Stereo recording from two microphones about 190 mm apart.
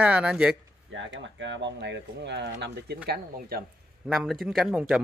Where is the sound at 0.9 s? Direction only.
80° right; by 3.6 s 55° right (ahead or behind).